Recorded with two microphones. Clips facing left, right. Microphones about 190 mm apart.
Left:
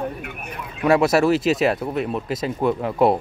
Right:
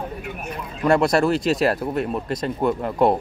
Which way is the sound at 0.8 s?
5° left (ahead or behind).